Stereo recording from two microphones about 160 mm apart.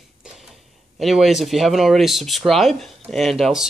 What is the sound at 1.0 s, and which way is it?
Speech, centre (ahead or behind).